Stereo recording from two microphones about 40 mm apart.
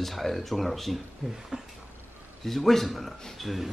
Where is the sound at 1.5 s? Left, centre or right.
Right.